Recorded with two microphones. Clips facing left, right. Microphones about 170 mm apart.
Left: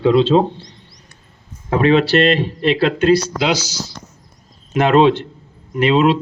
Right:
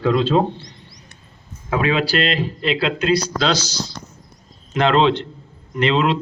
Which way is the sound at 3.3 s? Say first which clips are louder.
Left 2 dB; 10° left (ahead or behind).